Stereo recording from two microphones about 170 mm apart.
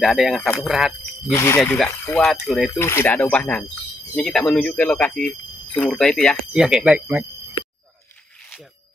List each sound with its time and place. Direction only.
0.0 s speech: centre (ahead or behind)
1.2 s speech: 15° left (ahead or behind); by 2.7 s centre (ahead or behind)
2.8 s speech: 15° left (ahead or behind); by 7.2 s 5° right (ahead or behind)